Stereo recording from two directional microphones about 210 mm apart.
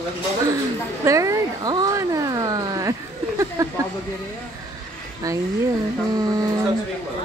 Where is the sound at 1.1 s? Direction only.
15° right (ahead or behind).